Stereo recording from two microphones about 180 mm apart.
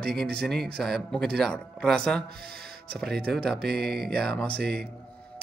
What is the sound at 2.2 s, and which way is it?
Speech, 60° right (ahead or behind).